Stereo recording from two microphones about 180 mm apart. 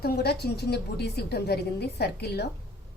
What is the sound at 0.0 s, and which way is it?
A woman's voice, 60° left (ahead or behind).